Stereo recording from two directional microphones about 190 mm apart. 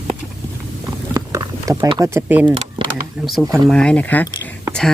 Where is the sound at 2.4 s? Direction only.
25° right (ahead or behind).